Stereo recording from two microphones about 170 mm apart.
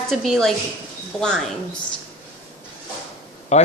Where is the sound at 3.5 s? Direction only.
40° left (ahead or behind).